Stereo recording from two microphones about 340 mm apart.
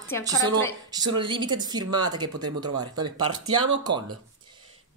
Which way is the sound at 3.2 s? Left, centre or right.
Right.